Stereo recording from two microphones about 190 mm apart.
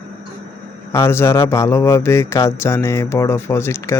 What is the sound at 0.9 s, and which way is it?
A man's voice, 15° left (ahead or behind).